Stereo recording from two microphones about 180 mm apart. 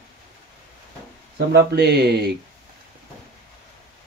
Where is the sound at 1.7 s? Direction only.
65° right (ahead or behind).